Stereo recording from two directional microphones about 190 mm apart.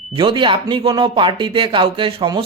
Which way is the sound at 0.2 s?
25° right (ahead or behind).